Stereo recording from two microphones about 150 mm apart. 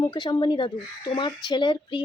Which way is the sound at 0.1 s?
30° left (ahead or behind).